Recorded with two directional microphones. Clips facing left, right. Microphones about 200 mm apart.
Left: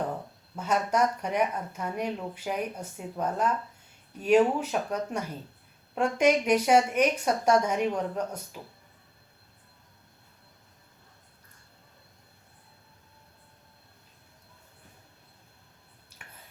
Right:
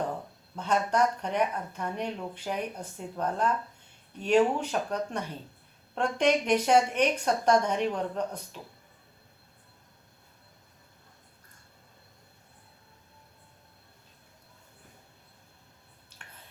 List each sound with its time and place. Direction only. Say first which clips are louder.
0.5 s speech: even; 5° left (ahead or behind)